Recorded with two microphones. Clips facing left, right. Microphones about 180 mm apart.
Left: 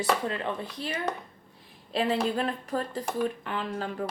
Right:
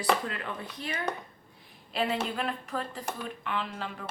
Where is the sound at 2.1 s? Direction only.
35° left (ahead or behind).